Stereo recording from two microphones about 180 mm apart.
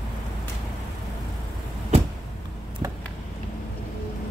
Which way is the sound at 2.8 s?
20° right (ahead or behind).